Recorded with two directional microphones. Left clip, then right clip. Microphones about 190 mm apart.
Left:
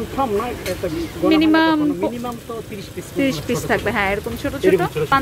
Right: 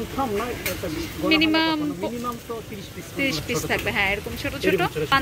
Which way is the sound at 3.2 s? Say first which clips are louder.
Left 4 dB; 35° left (ahead or behind).